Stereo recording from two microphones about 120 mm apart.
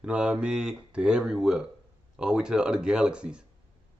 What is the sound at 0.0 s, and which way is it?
Speech, 10° right (ahead or behind).